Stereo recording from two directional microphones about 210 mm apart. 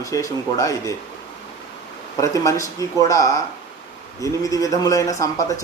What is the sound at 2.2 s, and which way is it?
A man's voice, 15° left (ahead or behind).